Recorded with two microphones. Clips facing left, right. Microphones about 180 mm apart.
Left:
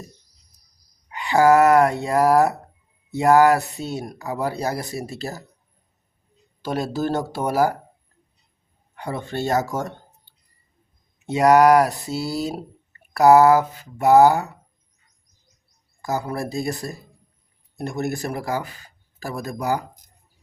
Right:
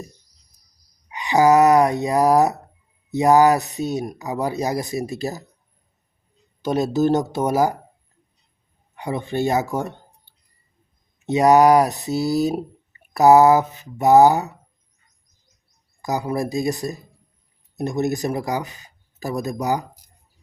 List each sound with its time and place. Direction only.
1.1 s speech: 20° right (ahead or behind)
6.6 s speech: 20° right (ahead or behind)
9.0 s speech: 15° right (ahead or behind)
11.3 s speech: 20° right (ahead or behind)
16.0 s speech: 15° right (ahead or behind)